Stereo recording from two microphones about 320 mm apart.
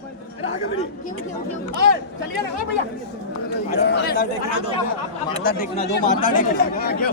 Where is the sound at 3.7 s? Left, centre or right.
Left.